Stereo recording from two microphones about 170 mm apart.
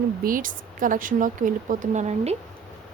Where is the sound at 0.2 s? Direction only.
55° right (ahead or behind).